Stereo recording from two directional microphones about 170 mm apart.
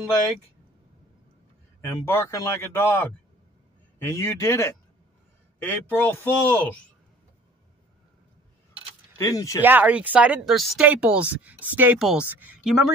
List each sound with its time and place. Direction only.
2.0 s speech: 15° left (ahead or behind)
9.2 s speech: 20° left (ahead or behind)
9.6 s speech: 10° right (ahead or behind)